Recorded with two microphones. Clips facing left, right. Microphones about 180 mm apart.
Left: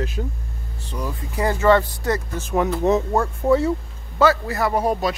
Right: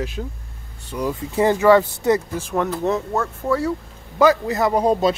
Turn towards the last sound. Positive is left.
turn(degrees=-20)  # may be behind; listen again after turning